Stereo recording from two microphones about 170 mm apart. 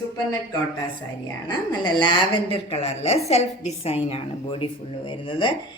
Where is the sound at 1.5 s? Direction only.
25° left (ahead or behind).